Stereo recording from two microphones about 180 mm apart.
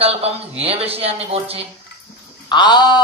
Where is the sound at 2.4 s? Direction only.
25° left (ahead or behind).